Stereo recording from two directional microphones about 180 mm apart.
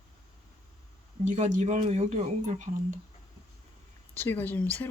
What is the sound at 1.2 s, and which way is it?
Speech, 40° right (ahead or behind).